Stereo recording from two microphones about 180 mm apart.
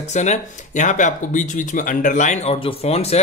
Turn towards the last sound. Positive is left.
turn(degrees=35)  # may be behind; listen again after turning